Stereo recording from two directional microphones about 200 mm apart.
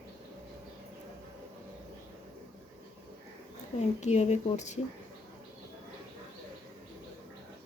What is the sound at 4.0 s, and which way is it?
Speech, 35° left (ahead or behind).